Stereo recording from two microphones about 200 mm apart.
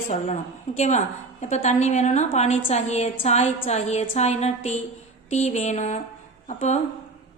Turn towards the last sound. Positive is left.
turn(degrees=35)  # may be behind; listen again after turning